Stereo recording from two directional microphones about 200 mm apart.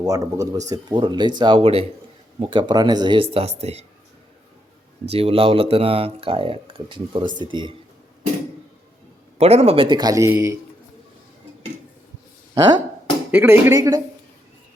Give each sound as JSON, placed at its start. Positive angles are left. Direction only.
{"t": 0.0, "sound": "speech", "side_deg": -15}
{"t": 5.1, "sound": "speech", "side_deg": -30}
{"t": 9.4, "sound": "speech", "side_deg": -30}
{"t": 12.5, "sound": "speech", "side_deg": -20}
{"t": 13.3, "sound": "speech", "side_deg": -10}